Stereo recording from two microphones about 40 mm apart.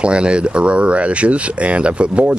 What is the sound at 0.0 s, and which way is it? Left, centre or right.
Speech, right.